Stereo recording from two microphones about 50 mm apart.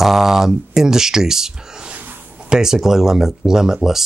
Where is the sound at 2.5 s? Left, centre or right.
Centre.